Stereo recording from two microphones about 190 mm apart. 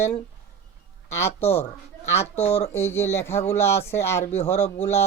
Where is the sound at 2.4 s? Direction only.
30° left (ahead or behind).